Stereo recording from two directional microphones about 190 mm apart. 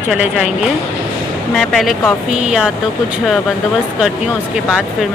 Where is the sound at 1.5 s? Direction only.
Centre (ahead or behind).